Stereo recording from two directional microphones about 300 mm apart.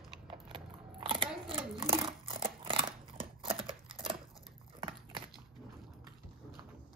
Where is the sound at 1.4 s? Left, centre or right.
Centre.